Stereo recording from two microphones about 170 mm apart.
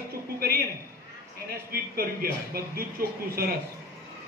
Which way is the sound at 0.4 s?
65° right (ahead or behind).